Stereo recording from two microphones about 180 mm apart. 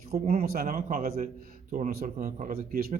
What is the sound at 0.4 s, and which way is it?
Speech, 55° right (ahead or behind).